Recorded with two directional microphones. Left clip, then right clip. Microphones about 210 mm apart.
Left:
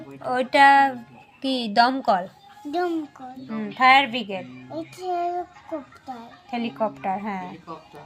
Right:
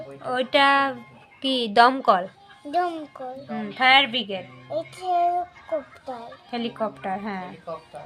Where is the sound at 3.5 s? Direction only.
10° right (ahead or behind).